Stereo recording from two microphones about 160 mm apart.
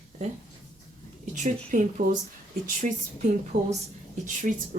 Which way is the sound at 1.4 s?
55° right (ahead or behind).